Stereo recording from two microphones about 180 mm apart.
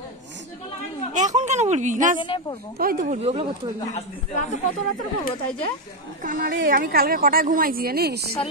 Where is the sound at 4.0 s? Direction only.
40° left (ahead or behind).